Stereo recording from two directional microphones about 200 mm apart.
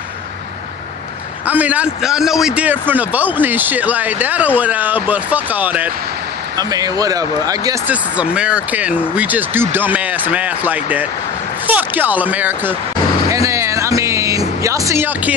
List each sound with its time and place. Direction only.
1.5 s a man's voice: 5° right (ahead or behind)
7.9 s a man's voice: 5° right (ahead or behind)
13.3 s music: 15° right (ahead or behind)
14.6 s a man's voice: 15° right (ahead or behind)